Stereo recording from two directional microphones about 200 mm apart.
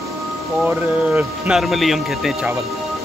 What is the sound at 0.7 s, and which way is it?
Speech, 10° right (ahead or behind).